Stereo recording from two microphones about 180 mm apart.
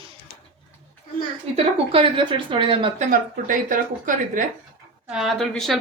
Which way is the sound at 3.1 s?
45° right (ahead or behind).